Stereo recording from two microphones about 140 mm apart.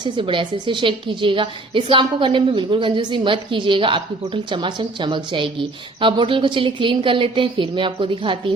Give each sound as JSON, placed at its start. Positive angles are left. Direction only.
{"t": 0.0, "sound": "a woman's voice", "side_deg": -35}